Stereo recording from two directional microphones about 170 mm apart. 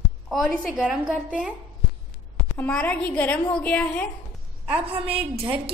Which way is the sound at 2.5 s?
10° left (ahead or behind).